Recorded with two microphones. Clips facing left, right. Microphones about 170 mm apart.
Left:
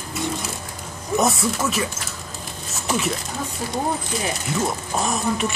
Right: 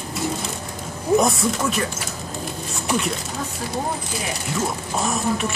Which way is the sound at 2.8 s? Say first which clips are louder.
Even; centre (ahead or behind).